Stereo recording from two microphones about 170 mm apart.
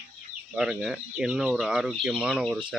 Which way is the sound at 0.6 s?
5° right (ahead or behind).